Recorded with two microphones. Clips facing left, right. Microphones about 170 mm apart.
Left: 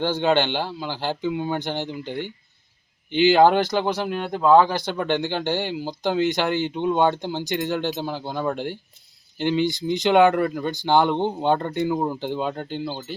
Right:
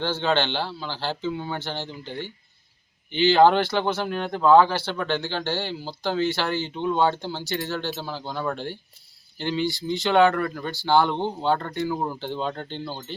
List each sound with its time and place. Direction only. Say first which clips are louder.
0.0 s speech: left 3 dB; 15° left (ahead or behind)